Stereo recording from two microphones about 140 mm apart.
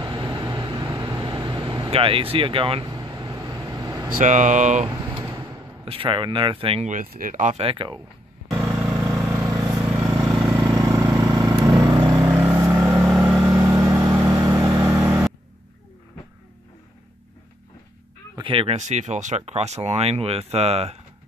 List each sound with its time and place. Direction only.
0.0 s vehicle: 35° right (ahead or behind)
4.1 s speech: 65° right (ahead or behind)
5.3 s a sound: 25° right (ahead or behind)
5.9 s speech: 40° right (ahead or behind)
6.9 s speech: 70° right (ahead or behind)
7.5 s speech: 40° right (ahead or behind)
8.5 s vehicle: 20° right (ahead or behind)
10.0 s vehicle: 15° right (ahead or behind)
13.1 s vehicle: 5° right (ahead or behind)
13.6 s vehicle: 20° right (ahead or behind)
18.3 s speech: 40° right (ahead or behind)
18.8 s speech: 55° right (ahead or behind)